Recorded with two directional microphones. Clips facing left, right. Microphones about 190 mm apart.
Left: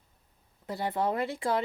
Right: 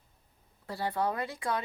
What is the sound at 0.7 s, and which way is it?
Speech, 20° left (ahead or behind).